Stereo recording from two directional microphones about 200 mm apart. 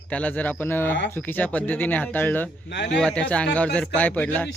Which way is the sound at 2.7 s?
60° left (ahead or behind).